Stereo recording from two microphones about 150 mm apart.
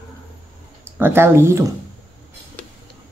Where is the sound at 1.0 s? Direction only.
15° right (ahead or behind).